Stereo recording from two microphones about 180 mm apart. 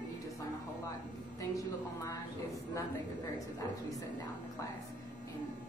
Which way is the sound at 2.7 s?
15° left (ahead or behind).